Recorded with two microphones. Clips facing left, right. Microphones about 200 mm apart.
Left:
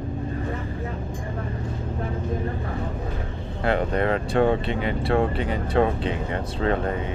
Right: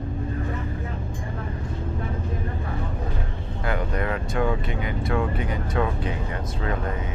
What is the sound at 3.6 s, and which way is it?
Speech, 30° left (ahead or behind).